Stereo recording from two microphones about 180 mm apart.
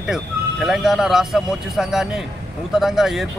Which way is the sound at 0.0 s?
5° right (ahead or behind).